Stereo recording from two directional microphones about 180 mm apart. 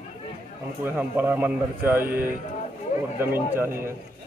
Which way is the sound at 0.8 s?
10° right (ahead or behind).